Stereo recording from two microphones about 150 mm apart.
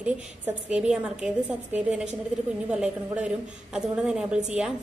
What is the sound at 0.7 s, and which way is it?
A woman's voice, 5° right (ahead or behind).